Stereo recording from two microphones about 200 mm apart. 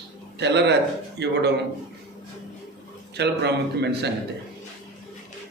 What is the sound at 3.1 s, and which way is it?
A man's voice, 55° right (ahead or behind).